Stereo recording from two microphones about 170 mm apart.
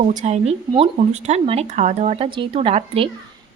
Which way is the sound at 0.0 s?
45° right (ahead or behind).